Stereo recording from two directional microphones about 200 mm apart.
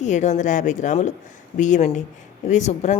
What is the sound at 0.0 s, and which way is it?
A woman's voice, 35° left (ahead or behind).